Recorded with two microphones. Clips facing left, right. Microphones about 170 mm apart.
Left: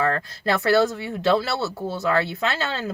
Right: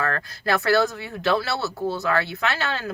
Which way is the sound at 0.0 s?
20° left (ahead or behind).